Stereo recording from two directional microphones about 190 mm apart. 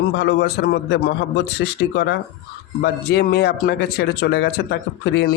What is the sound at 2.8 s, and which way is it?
A man's voice, 60° left (ahead or behind).